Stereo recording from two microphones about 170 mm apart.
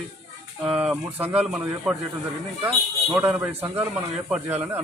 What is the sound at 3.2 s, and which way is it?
Speech, 10° right (ahead or behind).